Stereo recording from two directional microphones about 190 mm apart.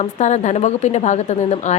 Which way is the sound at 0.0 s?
35° left (ahead or behind).